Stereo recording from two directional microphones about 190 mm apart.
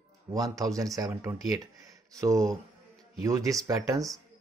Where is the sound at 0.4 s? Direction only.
15° right (ahead or behind).